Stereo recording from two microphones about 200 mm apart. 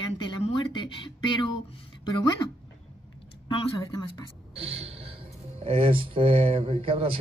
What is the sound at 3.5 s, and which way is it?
Speech, 20° left (ahead or behind).